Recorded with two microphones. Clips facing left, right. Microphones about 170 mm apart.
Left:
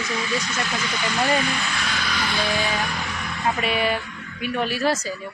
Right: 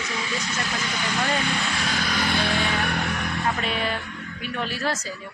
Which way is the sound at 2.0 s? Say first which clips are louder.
Even; 50° right (ahead or behind).